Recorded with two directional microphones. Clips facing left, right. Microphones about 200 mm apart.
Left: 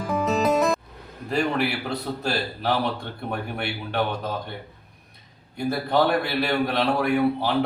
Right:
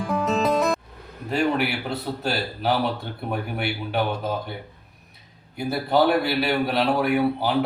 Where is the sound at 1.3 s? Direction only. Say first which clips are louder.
Right 1 dB; centre (ahead or behind).